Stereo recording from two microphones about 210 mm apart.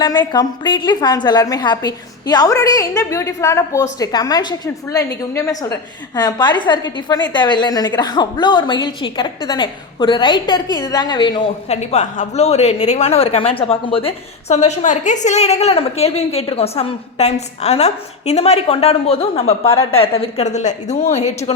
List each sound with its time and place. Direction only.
0.0 s a woman's voice: 20° left (ahead or behind)